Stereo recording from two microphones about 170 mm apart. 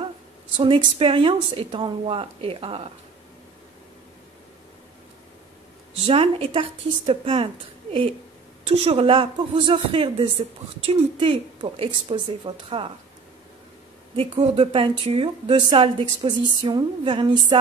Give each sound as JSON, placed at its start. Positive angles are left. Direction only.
{"t": 0.9, "sound": "speech", "side_deg": -35}
{"t": 6.0, "sound": "speech", "side_deg": -35}
{"t": 14.1, "sound": "speech", "side_deg": -35}
{"t": 16.2, "sound": "a sound", "side_deg": -25}